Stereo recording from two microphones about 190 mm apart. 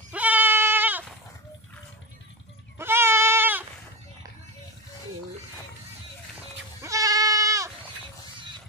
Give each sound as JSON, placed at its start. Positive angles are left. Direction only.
{"t": 0.1, "sound": "goat", "side_deg": -10}
{"t": 2.8, "sound": "goat", "side_deg": -15}
{"t": 6.8, "sound": "goat", "side_deg": -15}